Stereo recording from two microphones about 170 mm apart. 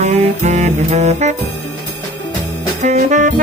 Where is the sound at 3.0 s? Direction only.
50° right (ahead or behind).